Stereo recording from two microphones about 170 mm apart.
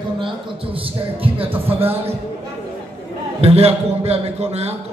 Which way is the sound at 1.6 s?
35° right (ahead or behind).